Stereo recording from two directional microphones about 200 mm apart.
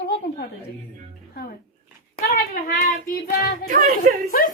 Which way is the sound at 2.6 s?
45° left (ahead or behind).